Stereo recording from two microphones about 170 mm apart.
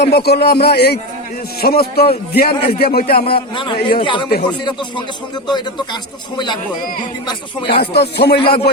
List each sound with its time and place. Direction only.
0.0 s a man's voice: 70° left (ahead or behind)
3.3 s speech: 30° left (ahead or behind)
7.8 s a man's voice: 75° left (ahead or behind)
8.4 s speech: 30° left (ahead or behind)